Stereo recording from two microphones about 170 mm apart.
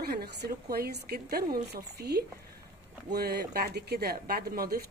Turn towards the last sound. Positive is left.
turn(degrees=-65)  # may be behind; listen again after turning